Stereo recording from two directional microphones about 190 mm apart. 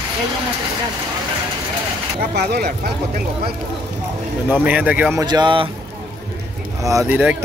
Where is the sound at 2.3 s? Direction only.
55° right (ahead or behind).